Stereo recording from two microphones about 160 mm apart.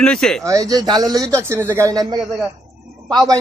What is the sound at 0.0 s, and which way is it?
Speech, 5° left (ahead or behind).